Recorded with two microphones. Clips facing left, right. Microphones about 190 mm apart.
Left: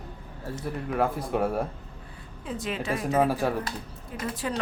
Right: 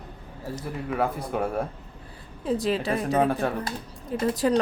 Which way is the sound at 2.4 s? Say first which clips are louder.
Right 6 dB; 35° right (ahead or behind).